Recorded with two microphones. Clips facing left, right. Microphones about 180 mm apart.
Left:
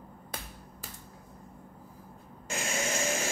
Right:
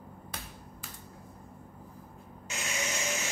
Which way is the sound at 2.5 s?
50° left (ahead or behind).